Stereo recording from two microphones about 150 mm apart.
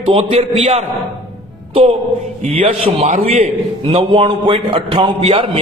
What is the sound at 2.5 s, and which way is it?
Speech, 40° right (ahead or behind).